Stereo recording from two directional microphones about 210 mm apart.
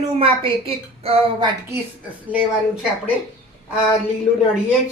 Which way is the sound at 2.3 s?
5° right (ahead or behind).